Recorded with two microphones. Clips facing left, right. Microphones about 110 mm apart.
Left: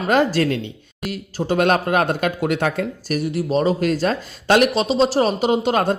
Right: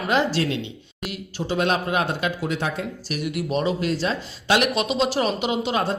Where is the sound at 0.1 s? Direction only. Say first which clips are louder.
Left 5 dB; 45° left (ahead or behind); by 2.8 s 65° left (ahead or behind).